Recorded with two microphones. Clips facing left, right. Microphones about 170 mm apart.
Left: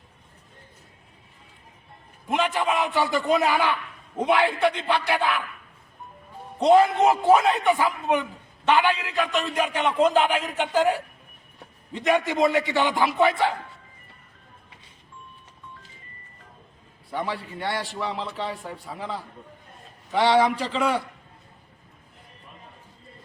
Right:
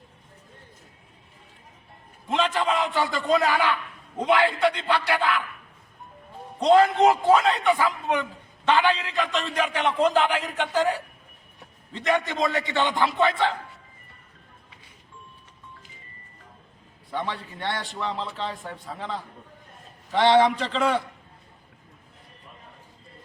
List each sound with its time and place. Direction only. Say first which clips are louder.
2.3 s a man's voice: even; 15° left (ahead or behind)
6.6 s a man's voice: even; 15° left (ahead or behind)
17.1 s a man's voice: left 1 dB; 10° left (ahead or behind)